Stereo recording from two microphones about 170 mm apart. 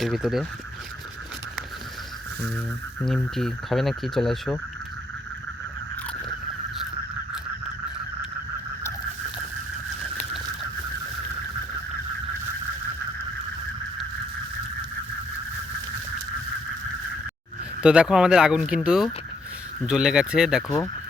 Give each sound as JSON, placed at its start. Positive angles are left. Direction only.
{"t": 0.0, "sound": "speech", "side_deg": 0}
{"t": 3.0, "sound": "speech", "side_deg": 0}
{"t": 17.8, "sound": "speech", "side_deg": -5}
{"t": 20.7, "sound": "speech", "side_deg": 20}